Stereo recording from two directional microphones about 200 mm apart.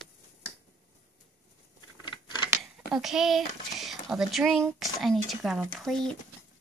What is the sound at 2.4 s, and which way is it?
Speech, 5° right (ahead or behind).